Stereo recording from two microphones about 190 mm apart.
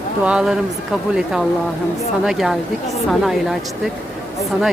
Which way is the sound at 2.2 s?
Centre (ahead or behind).